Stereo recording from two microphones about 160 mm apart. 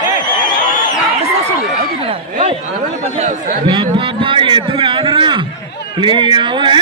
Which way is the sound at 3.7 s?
30° right (ahead or behind).